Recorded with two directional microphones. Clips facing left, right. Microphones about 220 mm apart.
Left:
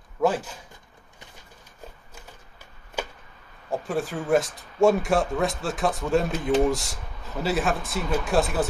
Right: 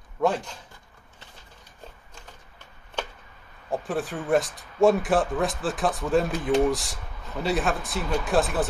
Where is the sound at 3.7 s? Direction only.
Centre (ahead or behind).